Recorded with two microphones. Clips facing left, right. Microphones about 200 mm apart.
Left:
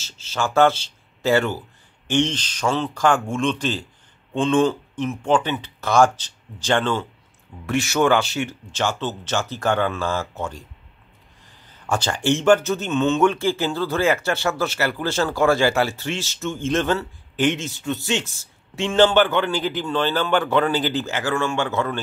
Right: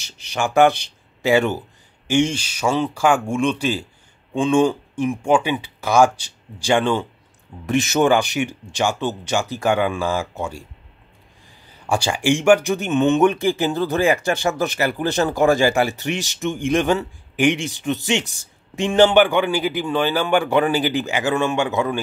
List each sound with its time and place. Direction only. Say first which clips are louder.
0.0 s speech: right 2 dB; 15° right (ahead or behind)
11.8 s speech: right 2 dB; 10° right (ahead or behind)